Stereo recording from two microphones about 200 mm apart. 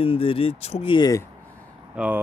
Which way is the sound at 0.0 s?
25° left (ahead or behind).